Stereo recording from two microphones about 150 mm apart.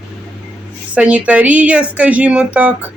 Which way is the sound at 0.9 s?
10° right (ahead or behind).